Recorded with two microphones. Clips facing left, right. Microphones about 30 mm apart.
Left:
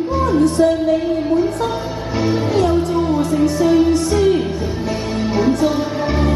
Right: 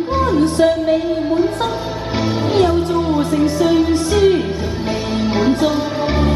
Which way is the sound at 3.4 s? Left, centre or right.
Right.